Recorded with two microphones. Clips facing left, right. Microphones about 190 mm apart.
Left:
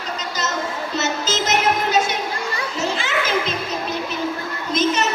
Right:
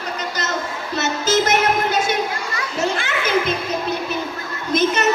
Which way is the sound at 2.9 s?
55° right (ahead or behind).